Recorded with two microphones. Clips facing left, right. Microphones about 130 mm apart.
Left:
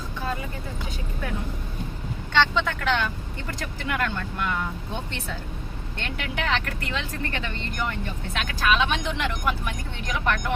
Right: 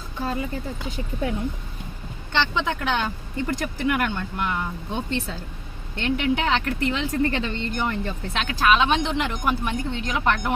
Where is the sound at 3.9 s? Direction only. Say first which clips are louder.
Right 2 dB; 20° right (ahead or behind).